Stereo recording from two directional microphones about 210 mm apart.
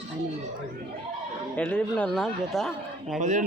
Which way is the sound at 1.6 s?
5° left (ahead or behind).